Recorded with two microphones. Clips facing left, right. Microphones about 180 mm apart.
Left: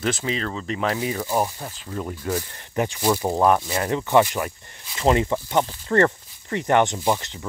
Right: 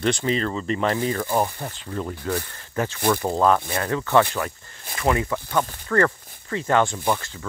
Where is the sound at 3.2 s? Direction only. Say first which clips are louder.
Left 1 dB; 15° left (ahead or behind).